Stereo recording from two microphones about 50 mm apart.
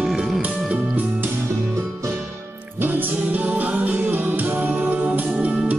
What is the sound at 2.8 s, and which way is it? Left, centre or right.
Music, right.